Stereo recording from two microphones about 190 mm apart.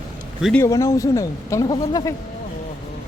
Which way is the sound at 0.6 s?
15° left (ahead or behind).